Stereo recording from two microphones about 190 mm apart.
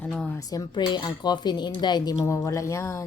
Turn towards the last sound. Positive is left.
turn(degrees=15)  # may be behind; listen again after turning